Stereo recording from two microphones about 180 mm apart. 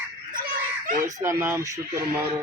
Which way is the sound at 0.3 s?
50° right (ahead or behind).